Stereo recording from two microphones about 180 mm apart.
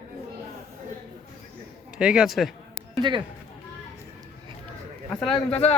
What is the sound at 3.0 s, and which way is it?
Speech, 25° right (ahead or behind).